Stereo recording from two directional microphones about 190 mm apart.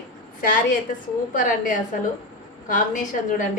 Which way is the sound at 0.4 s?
45° left (ahead or behind).